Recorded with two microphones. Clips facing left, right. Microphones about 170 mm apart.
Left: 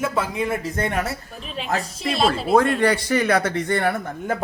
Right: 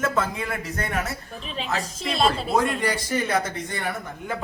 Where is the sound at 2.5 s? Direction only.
60° left (ahead or behind).